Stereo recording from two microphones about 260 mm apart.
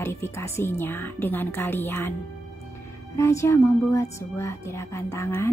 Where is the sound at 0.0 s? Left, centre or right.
Centre.